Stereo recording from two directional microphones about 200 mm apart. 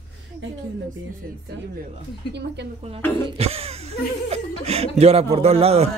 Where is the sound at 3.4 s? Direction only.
30° right (ahead or behind).